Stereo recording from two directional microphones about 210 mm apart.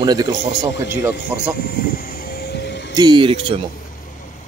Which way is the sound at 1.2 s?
50° left (ahead or behind).